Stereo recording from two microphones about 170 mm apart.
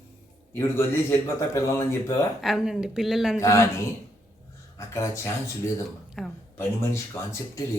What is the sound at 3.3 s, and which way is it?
Speech, 15° left (ahead or behind).